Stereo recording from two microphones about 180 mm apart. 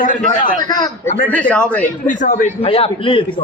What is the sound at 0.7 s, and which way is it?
Speech, 20° left (ahead or behind).